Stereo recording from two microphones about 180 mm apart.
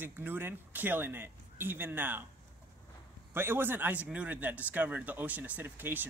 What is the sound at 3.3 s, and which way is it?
A man's voice, 10° right (ahead or behind).